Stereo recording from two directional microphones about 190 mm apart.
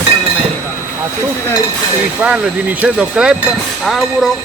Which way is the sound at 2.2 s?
5° right (ahead or behind).